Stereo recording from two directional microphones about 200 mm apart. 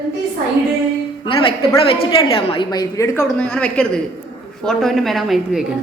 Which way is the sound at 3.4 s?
5° left (ahead or behind).